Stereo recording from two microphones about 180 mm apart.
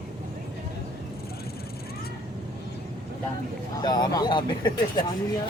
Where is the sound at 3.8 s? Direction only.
25° left (ahead or behind).